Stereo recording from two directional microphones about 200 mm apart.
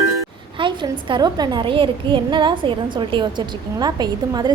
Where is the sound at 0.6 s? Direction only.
25° right (ahead or behind).